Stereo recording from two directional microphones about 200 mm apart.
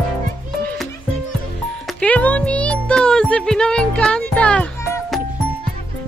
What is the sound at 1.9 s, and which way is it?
Music, 5° left (ahead or behind).